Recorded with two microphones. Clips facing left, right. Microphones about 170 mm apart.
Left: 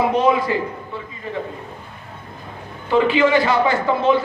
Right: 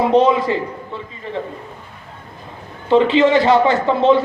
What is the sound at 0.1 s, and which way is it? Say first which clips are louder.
Speech: right 4 dB; 25° right (ahead or behind).